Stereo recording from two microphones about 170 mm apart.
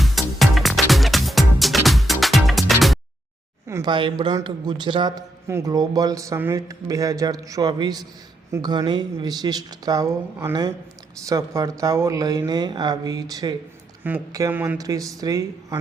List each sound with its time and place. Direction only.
0.0 s music: centre (ahead or behind)
3.7 s a man's voice: 25° right (ahead or behind)